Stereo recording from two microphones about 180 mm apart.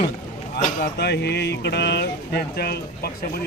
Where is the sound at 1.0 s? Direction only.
65° left (ahead or behind).